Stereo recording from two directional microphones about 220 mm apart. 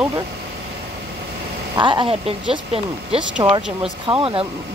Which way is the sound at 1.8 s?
20° right (ahead or behind).